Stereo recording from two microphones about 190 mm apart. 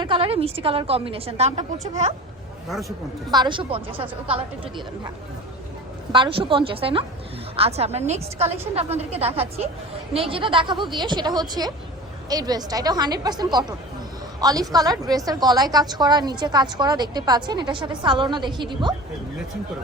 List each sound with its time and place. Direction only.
0.0 s a woman's voice: 30° right (ahead or behind)
3.3 s a woman's voice: 25° right (ahead or behind)